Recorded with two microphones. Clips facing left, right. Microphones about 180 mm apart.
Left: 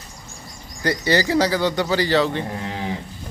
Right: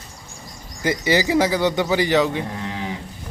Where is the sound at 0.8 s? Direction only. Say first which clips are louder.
Even; 15° right (ahead or behind).